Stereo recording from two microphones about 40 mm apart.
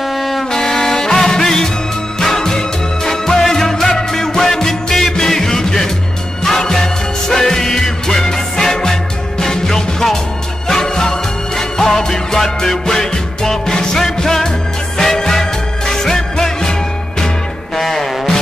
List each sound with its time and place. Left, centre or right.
0.1 s music: centre
0.5 s music: centre
17.7 s music: centre